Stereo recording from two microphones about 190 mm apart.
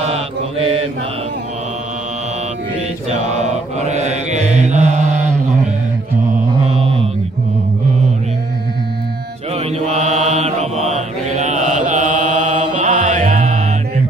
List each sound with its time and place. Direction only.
0.1 s mantra: 30° right (ahead or behind)
3.3 s mantra: 35° right (ahead or behind)
6.7 s mantra: 30° right (ahead or behind)
9.5 s mantra: 35° right (ahead or behind)